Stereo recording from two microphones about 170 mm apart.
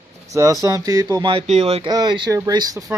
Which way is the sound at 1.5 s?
40° right (ahead or behind).